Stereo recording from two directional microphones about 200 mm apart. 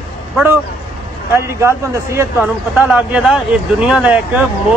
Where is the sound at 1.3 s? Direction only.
15° right (ahead or behind).